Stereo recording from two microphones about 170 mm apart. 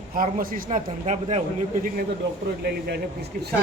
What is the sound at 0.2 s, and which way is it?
A man's voice, 50° right (ahead or behind).